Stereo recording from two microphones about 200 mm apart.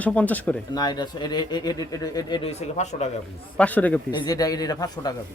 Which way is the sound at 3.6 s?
10° left (ahead or behind).